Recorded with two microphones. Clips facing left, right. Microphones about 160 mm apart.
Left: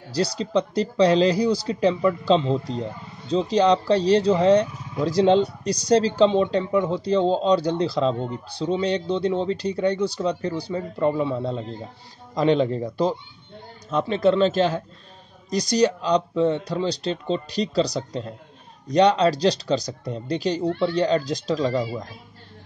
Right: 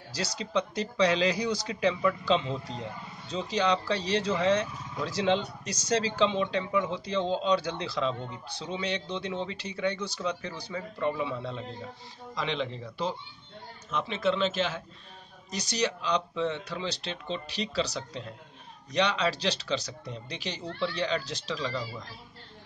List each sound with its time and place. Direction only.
0.1 s speech: 35° left (ahead or behind)